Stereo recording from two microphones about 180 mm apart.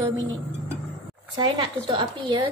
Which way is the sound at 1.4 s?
25° right (ahead or behind).